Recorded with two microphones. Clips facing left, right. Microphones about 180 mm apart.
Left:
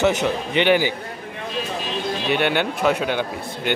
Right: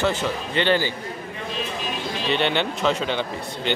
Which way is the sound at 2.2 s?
10° left (ahead or behind).